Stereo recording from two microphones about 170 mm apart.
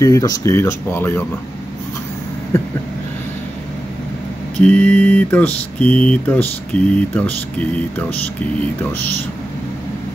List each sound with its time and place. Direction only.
0.0 s mantra: 20° left (ahead or behind)
4.6 s mantra: 5° left (ahead or behind)